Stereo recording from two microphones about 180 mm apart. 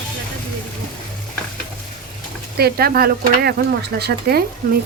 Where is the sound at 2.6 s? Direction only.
60° right (ahead or behind).